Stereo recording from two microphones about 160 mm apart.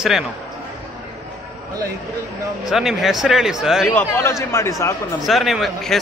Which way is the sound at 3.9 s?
15° left (ahead or behind).